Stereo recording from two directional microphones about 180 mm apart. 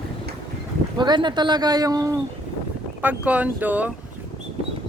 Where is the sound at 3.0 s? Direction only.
10° right (ahead or behind).